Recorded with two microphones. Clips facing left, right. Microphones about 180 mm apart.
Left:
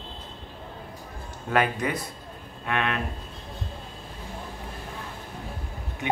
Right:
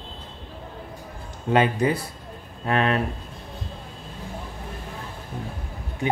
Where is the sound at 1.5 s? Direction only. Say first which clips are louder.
Right 5 dB; 30° right (ahead or behind).